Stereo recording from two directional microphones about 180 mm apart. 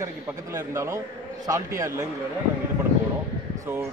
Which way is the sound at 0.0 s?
20° right (ahead or behind).